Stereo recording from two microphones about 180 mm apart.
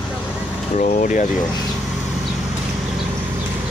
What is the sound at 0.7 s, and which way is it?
Speech, 45° left (ahead or behind).